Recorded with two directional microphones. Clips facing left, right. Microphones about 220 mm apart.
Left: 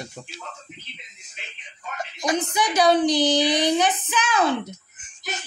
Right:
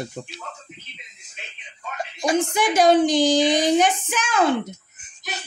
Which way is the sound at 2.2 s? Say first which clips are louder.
Right 3 dB; 30° right (ahead or behind).